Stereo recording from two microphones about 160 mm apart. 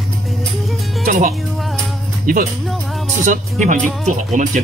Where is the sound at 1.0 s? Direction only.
55° right (ahead or behind).